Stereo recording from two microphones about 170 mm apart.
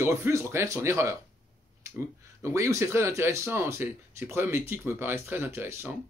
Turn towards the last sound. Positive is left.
turn(degrees=-15)  # may be behind; listen again after turning